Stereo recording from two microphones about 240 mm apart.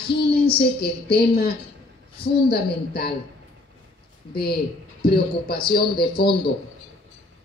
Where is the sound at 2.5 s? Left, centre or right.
Left.